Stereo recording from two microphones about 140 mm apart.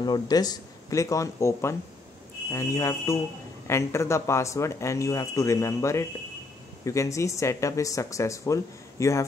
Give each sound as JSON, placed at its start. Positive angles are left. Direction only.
{"t": 0.0, "sound": "speech", "side_deg": 30}